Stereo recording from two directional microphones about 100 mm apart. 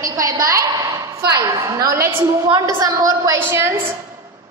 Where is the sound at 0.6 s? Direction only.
50° right (ahead or behind).